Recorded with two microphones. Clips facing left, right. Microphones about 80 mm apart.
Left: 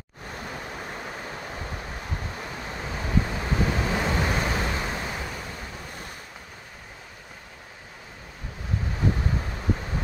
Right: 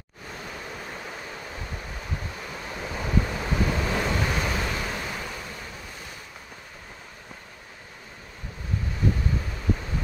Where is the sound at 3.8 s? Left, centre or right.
Centre.